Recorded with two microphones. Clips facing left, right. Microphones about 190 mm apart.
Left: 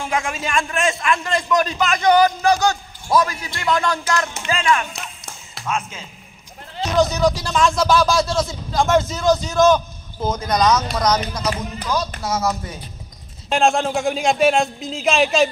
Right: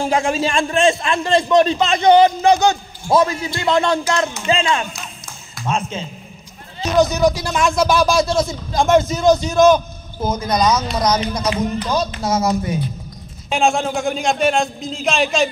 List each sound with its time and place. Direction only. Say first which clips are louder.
0.0 s a man's voice: right 6 dB; 30° right (ahead or behind)
7.0 s speech: right 3 dB; 10° right (ahead or behind)
13.5 s a man's voice: even; centre (ahead or behind)